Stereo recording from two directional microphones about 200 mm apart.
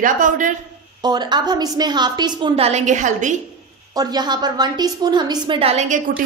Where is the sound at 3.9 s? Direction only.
20° right (ahead or behind).